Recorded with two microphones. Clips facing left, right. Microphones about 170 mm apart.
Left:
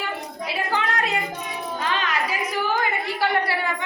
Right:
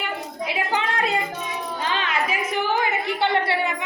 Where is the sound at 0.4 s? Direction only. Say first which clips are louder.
Right 1 dB; 25° right (ahead or behind).